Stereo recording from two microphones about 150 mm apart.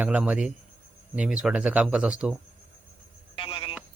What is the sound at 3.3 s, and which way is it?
Telephone, 35° left (ahead or behind).